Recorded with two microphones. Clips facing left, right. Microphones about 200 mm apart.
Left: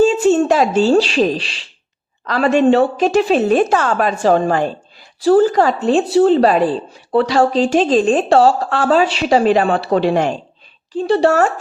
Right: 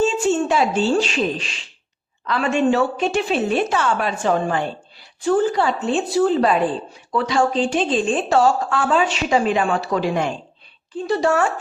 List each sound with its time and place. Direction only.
0.0 s a sound: 40° left (ahead or behind)
2.2 s a woman's voice: 40° left (ahead or behind)
11.0 s a woman's voice: 30° left (ahead or behind)